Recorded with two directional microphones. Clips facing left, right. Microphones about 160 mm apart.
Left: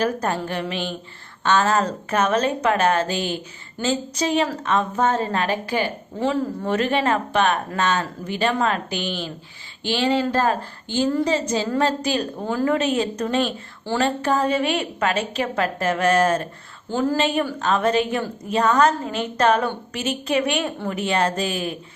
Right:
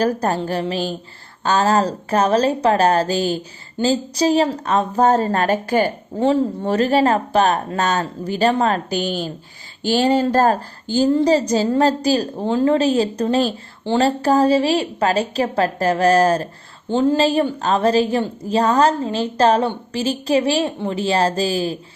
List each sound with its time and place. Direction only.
0.0 s a woman's voice: 35° right (ahead or behind)
16.9 s a woman's voice: 25° right (ahead or behind)